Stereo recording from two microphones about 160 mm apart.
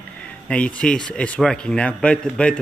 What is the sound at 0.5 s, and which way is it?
A man's voice, 5° left (ahead or behind).